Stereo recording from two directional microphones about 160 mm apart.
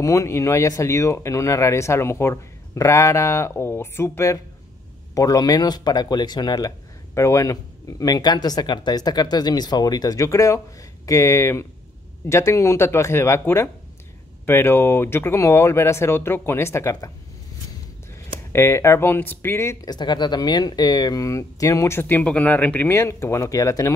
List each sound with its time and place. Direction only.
0.0 s speech: 20° left (ahead or behind)
18.5 s speech: 15° left (ahead or behind)